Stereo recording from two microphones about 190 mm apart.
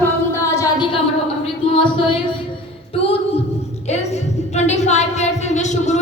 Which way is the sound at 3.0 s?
30° left (ahead or behind).